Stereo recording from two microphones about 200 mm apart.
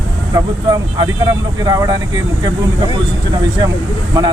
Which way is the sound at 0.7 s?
20° right (ahead or behind).